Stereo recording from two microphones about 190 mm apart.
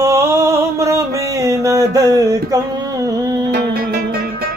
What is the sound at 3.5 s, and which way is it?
Music, 55° right (ahead or behind).